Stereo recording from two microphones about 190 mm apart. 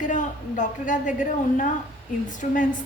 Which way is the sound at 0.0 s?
40° left (ahead or behind).